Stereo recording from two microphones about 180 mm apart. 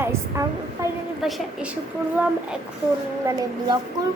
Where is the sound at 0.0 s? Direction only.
15° right (ahead or behind).